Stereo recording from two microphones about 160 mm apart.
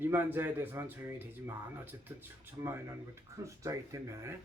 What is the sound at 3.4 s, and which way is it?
Speech, 20° right (ahead or behind).